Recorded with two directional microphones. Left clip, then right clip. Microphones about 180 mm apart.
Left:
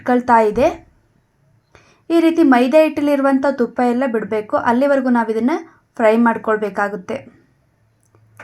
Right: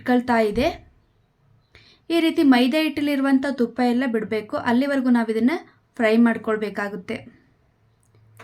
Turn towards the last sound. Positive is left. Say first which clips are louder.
# left 7 dB
turn(degrees=-20)  # may be behind; listen again after turning